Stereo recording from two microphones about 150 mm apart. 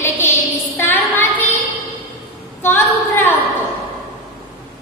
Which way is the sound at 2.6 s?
15° left (ahead or behind).